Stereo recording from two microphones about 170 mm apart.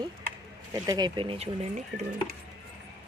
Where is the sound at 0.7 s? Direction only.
20° right (ahead or behind).